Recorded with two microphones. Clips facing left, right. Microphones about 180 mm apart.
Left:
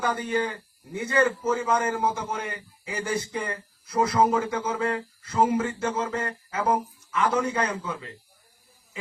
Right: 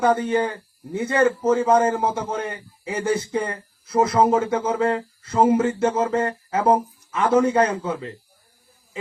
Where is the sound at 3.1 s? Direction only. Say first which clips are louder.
Right 5 dB; 30° right (ahead or behind).